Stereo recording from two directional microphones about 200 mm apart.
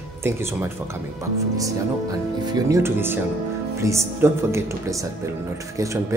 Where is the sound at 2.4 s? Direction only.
15° right (ahead or behind).